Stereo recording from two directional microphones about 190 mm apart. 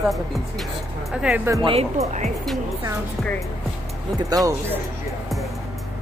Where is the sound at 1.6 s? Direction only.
30° right (ahead or behind).